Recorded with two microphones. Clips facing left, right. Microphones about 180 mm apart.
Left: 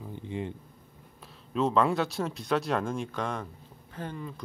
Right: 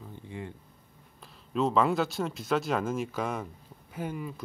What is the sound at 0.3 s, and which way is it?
Speech, 20° left (ahead or behind).